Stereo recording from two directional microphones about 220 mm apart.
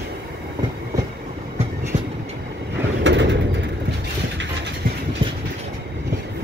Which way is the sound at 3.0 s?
55° right (ahead or behind).